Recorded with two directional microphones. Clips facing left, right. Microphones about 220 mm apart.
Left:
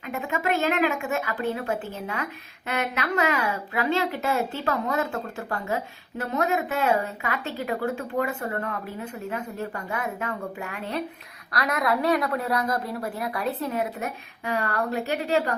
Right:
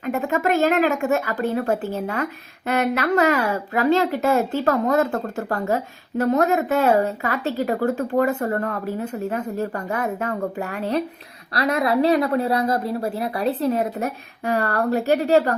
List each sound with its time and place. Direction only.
0.0 s speech: 45° right (ahead or behind)
11.5 s speech: 30° right (ahead or behind)